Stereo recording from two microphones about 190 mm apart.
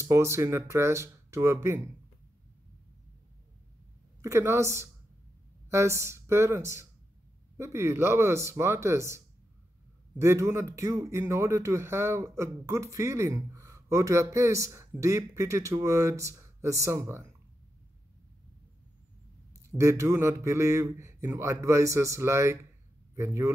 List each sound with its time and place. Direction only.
0.0 s speech: 15° right (ahead or behind)
4.2 s speech: 15° right (ahead or behind)
19.5 s speech: 15° right (ahead or behind)